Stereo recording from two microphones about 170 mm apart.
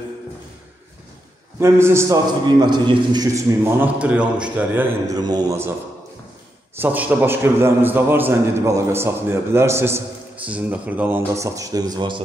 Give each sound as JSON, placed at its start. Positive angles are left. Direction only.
{"t": 1.6, "sound": "a man's voice", "side_deg": -15}
{"t": 5.1, "sound": "a man's voice", "side_deg": -25}
{"t": 6.8, "sound": "a man's voice", "side_deg": -10}